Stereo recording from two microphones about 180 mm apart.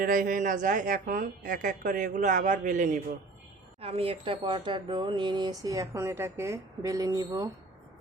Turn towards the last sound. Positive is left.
turn(degrees=-20)  # may be behind; listen again after turning